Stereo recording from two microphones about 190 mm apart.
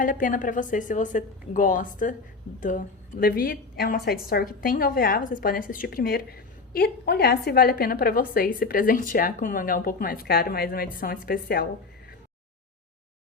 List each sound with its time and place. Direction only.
0.0 s a woman's voice: 45° left (ahead or behind)